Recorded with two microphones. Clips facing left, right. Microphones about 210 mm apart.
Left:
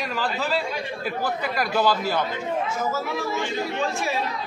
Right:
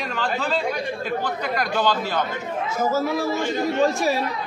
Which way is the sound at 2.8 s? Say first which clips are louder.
Right 5 dB; 40° right (ahead or behind).